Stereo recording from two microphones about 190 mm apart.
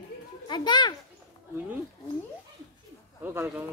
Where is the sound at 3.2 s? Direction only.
10° right (ahead or behind).